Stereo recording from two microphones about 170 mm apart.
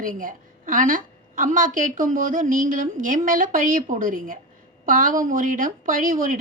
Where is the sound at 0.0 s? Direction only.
55° right (ahead or behind).